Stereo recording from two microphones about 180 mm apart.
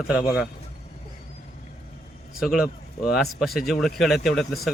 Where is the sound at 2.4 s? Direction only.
5° right (ahead or behind).